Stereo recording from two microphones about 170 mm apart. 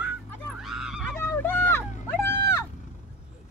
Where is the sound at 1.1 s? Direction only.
10° left (ahead or behind).